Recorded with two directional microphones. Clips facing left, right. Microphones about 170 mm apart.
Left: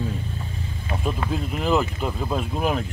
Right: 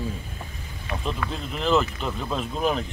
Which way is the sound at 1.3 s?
10° left (ahead or behind).